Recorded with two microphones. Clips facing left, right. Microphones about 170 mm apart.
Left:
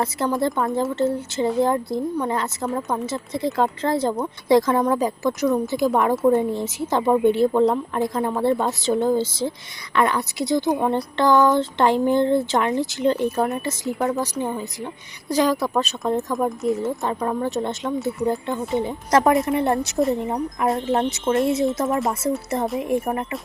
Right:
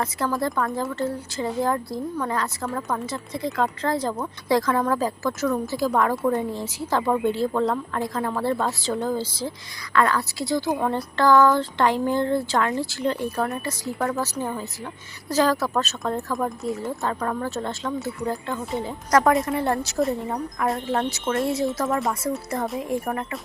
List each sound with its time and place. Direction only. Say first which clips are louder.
0.0 s a woman's voice: left 3 dB; 25° left (ahead or behind)